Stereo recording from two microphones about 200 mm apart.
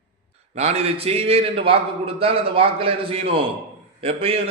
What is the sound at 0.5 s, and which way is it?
A man's voice, 30° right (ahead or behind).